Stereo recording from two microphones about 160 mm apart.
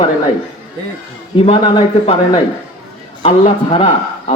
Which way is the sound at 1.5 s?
30° left (ahead or behind).